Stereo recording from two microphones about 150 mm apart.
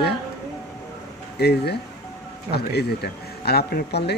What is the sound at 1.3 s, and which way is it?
Speech, 90° left.